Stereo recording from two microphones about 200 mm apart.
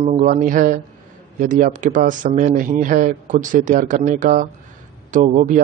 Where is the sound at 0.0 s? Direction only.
35° right (ahead or behind).